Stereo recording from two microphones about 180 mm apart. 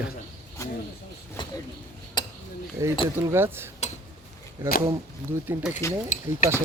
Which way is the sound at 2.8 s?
15° right (ahead or behind).